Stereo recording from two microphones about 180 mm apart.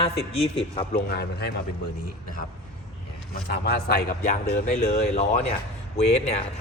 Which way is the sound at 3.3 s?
60° left (ahead or behind).